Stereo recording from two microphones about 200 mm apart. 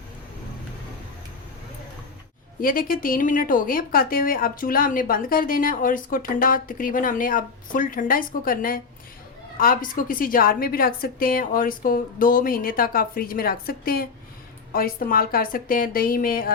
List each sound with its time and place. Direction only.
2.6 s a woman's voice: 45° left (ahead or behind)